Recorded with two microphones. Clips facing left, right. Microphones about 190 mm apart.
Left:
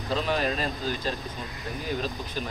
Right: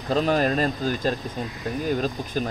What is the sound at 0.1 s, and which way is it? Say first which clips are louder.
Speech: right 6 dB; 45° right (ahead or behind).